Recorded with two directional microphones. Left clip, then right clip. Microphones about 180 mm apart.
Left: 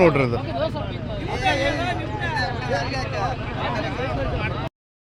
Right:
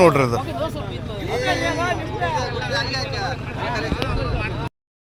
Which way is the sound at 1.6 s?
60° left (ahead or behind).